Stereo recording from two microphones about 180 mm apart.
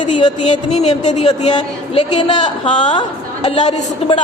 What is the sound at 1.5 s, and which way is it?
A woman's voice, 25° left (ahead or behind).